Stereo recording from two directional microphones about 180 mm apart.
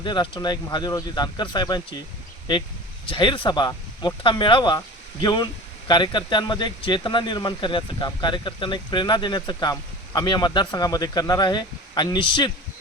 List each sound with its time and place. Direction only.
0.0 s speech: 25° left (ahead or behind)
3.1 s speech: 25° left (ahead or behind)